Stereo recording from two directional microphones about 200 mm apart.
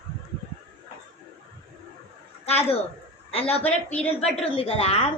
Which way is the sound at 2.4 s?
30° left (ahead or behind).